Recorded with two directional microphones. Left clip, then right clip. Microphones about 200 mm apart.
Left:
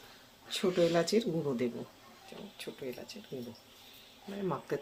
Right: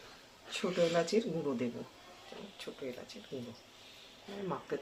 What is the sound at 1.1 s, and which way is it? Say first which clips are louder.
Speech: left 2 dB; 25° left (ahead or behind).